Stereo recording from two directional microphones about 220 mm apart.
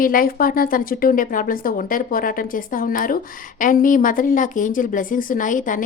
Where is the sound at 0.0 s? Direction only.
40° left (ahead or behind).